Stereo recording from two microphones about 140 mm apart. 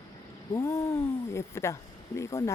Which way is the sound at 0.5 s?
20° left (ahead or behind).